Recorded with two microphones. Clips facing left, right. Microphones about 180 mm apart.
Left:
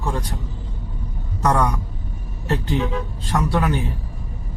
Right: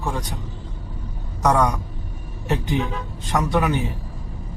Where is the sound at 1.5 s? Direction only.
15° right (ahead or behind).